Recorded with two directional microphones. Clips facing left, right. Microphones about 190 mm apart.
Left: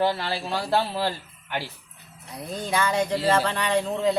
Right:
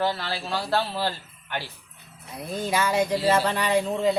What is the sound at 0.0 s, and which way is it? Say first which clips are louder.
A man's voice: left 2 dB; 15° left (ahead or behind).